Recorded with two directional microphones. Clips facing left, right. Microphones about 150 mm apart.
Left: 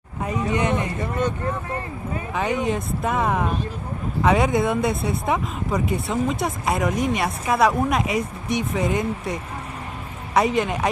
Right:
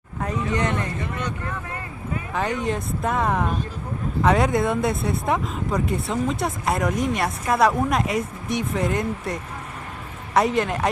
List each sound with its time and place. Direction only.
0.2 s a sound: 10° left (ahead or behind)
1.5 s speech: 30° left (ahead or behind)
2.3 s speech: centre (ahead or behind)